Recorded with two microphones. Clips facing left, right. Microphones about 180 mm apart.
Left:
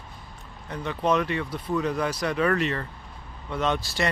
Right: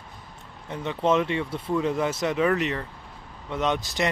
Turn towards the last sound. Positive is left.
turn(degrees=-20)  # may be behind; listen again after turning